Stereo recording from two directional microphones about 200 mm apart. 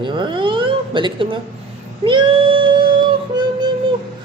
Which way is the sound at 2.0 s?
25° right (ahead or behind).